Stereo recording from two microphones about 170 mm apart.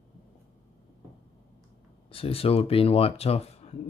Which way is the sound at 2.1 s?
35° left (ahead or behind).